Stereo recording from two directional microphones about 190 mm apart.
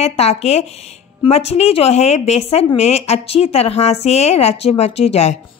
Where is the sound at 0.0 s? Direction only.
35° left (ahead or behind).